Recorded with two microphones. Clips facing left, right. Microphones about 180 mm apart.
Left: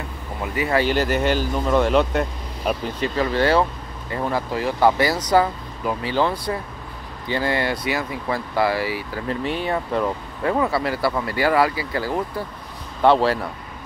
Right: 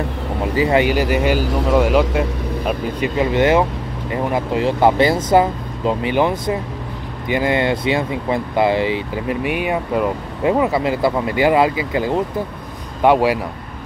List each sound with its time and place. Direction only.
0.4 s speech: 25° right (ahead or behind)
0.8 s speech: 10° right (ahead or behind)
3.2 s speech: 20° right (ahead or behind)